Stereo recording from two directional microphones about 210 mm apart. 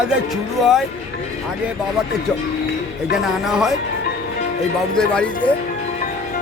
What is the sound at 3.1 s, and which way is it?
Speech, centre (ahead or behind).